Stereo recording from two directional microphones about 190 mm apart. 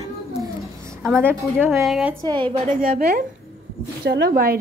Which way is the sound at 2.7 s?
50° right (ahead or behind).